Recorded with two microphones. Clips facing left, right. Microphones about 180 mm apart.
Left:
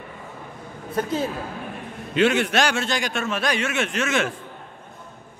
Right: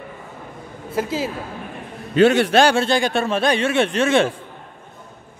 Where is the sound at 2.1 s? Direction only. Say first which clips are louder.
Right 6 dB; 35° right (ahead or behind).